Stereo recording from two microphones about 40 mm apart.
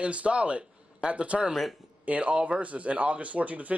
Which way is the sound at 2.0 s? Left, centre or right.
Right.